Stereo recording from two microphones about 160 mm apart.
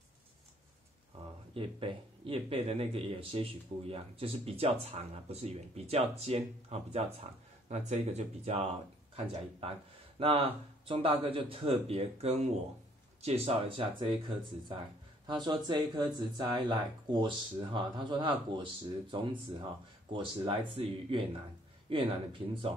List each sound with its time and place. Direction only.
1.5 s speech: 35° right (ahead or behind)